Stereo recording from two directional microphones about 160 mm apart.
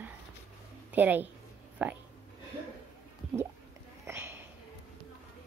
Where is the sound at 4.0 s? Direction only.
15° right (ahead or behind).